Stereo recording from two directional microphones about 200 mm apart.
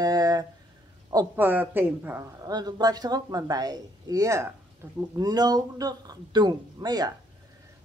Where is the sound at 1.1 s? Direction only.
10° right (ahead or behind).